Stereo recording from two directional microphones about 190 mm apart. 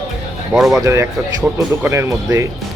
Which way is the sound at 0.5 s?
Centre (ahead or behind).